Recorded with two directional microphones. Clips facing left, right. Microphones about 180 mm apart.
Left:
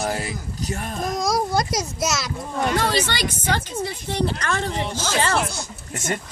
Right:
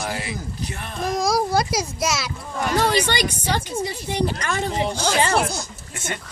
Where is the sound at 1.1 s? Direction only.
Centre (ahead or behind).